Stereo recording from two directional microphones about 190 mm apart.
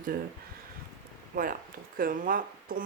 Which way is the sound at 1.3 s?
50° right (ahead or behind).